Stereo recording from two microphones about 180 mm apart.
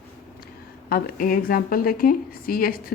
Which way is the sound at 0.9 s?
55° left (ahead or behind).